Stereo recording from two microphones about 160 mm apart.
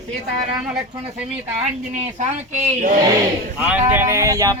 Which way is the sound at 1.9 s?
50° right (ahead or behind).